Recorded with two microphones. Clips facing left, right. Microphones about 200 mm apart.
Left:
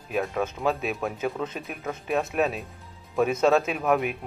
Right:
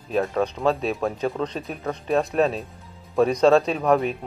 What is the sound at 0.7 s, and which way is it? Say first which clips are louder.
Speech: right 4 dB; 30° right (ahead or behind).